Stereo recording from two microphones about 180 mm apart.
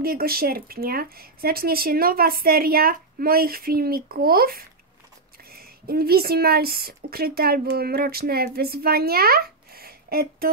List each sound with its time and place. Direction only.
0.0 s speech: 55° right (ahead or behind)